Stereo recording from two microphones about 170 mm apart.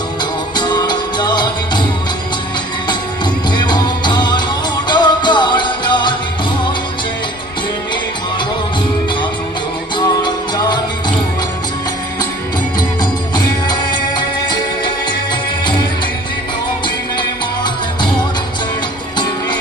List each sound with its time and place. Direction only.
0.2 s music: 25° left (ahead or behind)
3.5 s music: 25° left (ahead or behind)
9.9 s music: 25° left (ahead or behind)
13.0 s music: 25° left (ahead or behind)
16.8 s music: 25° left (ahead or behind)
19.1 s music: 25° left (ahead or behind)